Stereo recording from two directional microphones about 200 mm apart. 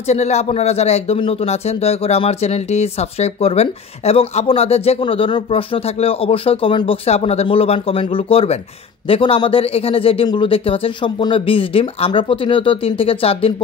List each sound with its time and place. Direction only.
0.1 s a man's voice: 35° left (ahead or behind)